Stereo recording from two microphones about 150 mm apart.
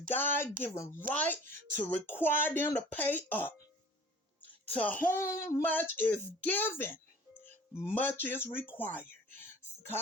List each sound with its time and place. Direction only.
0.1 s speech: 15° left (ahead or behind)
4.6 s speech: 10° left (ahead or behind)
9.4 s music: 15° left (ahead or behind)